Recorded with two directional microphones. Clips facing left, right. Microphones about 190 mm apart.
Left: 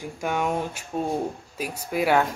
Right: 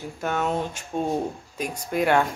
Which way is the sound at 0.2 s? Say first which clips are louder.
Even; 10° left (ahead or behind).